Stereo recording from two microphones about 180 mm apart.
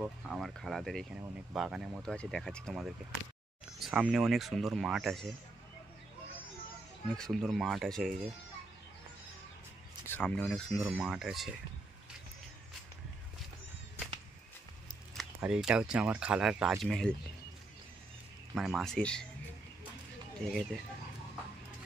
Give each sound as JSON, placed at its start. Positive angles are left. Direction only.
{"t": 0.0, "sound": "speech", "side_deg": 0}
{"t": 7.1, "sound": "speech", "side_deg": 5}
{"t": 10.0, "sound": "speech", "side_deg": 10}
{"t": 10.8, "sound": "speech", "side_deg": -10}
{"t": 15.1, "sound": "speech", "side_deg": -5}
{"t": 18.5, "sound": "speech", "side_deg": 0}
{"t": 20.3, "sound": "speech", "side_deg": 0}